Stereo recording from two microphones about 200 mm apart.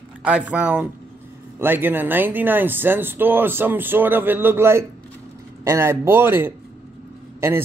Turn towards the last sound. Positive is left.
turn(degrees=-10)  # may be behind; listen again after turning